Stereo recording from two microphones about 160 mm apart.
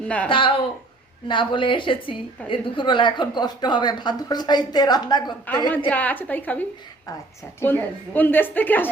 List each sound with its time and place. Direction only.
0.0 s a woman's voice: 10° left (ahead or behind)
0.3 s a woman's voice: 30° left (ahead or behind)
5.9 s a woman's voice: 10° left (ahead or behind)